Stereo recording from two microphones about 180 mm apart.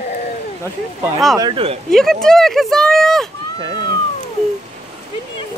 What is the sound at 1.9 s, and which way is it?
Speech, 5° left (ahead or behind).